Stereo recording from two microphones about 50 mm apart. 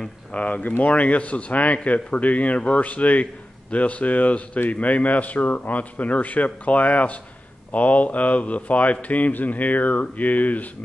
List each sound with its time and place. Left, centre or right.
0.0 s a man's voice: left